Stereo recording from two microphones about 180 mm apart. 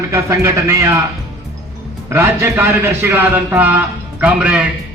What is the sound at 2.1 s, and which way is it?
A man's voice, 15° right (ahead or behind).